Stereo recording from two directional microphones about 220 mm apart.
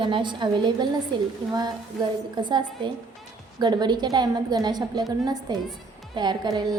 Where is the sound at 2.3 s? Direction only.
20° right (ahead or behind).